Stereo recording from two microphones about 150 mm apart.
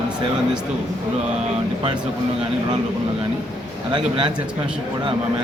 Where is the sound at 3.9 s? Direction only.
30° right (ahead or behind).